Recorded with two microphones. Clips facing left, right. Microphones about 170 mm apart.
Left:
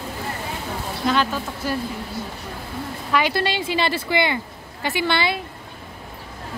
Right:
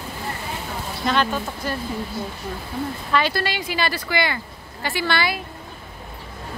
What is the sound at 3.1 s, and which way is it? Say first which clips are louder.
A woman's voice: left 2 dB; 15° left (ahead or behind).